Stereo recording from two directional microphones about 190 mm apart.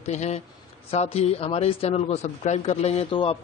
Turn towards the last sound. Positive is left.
turn(degrees=30)  # may be behind; listen again after turning